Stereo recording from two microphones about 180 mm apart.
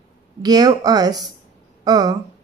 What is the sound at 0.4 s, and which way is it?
Speech, 20° right (ahead or behind).